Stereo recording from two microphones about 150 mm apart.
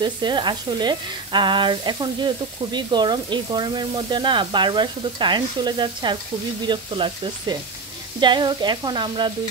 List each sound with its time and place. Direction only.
0.0 s frying: 30° right (ahead or behind)